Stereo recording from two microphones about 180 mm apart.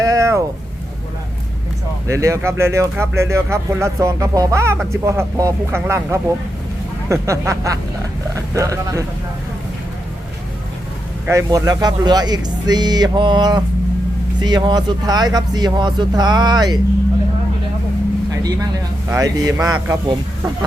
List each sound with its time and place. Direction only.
0.0 s vehicle: 20° right (ahead or behind)
2.0 s speech: 15° right (ahead or behind)
11.3 s speech: 20° right (ahead or behind)
19.1 s speech: 15° right (ahead or behind)